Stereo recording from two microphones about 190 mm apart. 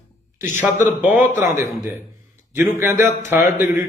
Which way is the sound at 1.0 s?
40° left (ahead or behind).